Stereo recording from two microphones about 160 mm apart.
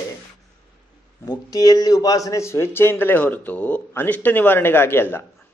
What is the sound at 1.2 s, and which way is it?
A man's voice, 20° left (ahead or behind).